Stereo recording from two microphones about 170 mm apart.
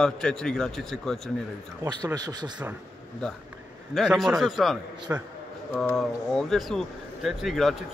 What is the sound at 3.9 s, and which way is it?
Speech, centre (ahead or behind).